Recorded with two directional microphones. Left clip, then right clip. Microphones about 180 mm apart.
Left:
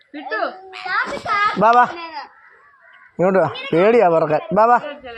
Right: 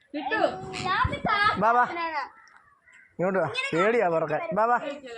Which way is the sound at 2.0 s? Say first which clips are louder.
Right 1 dB; 50° right (ahead or behind).